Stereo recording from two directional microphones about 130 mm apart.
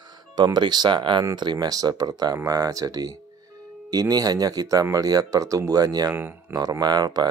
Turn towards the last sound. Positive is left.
turn(degrees=-30)  # may be behind; listen again after turning